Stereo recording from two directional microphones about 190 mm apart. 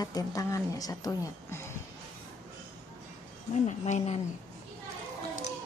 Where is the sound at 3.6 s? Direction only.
35° left (ahead or behind).